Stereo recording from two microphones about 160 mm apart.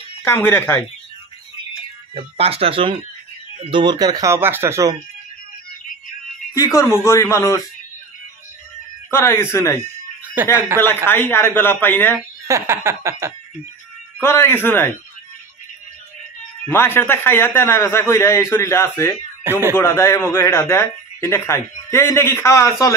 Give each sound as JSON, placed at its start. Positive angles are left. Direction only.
{"t": 0.2, "sound": "a man's voice", "side_deg": 15}
{"t": 2.1, "sound": "speech", "side_deg": -40}
{"t": 6.5, "sound": "a man's voice", "side_deg": 20}
{"t": 9.1, "sound": "a man's voice", "side_deg": 15}
{"t": 10.2, "sound": "a sound", "side_deg": -10}
{"t": 10.7, "sound": "speech", "side_deg": -15}
{"t": 11.1, "sound": "a man's voice", "side_deg": 15}
{"t": 12.4, "sound": "speech", "side_deg": -15}
{"t": 14.2, "sound": "a man's voice", "side_deg": 15}
{"t": 16.6, "sound": "a man's voice", "side_deg": 15}
{"t": 19.4, "sound": "speech", "side_deg": -15}
{"t": 19.8, "sound": "a man's voice", "side_deg": 20}